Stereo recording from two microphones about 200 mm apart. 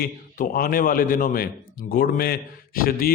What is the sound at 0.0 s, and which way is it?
A man's voice, 45° left (ahead or behind).